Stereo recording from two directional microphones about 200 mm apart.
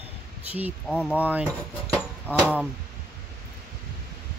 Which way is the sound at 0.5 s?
10° right (ahead or behind).